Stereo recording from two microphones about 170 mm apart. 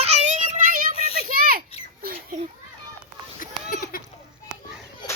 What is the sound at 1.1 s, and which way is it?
Children playing, 60° right (ahead or behind).